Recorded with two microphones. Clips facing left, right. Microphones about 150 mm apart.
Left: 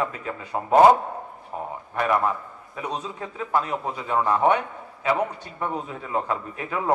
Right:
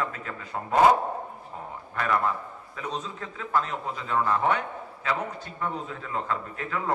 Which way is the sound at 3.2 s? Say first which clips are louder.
Left 3 dB; 15° left (ahead or behind).